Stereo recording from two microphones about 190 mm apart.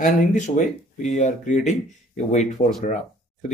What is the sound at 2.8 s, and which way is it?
Speech, 40° left (ahead or behind).